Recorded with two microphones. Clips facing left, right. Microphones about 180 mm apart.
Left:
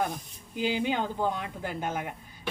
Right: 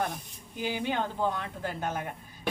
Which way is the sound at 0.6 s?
15° left (ahead or behind).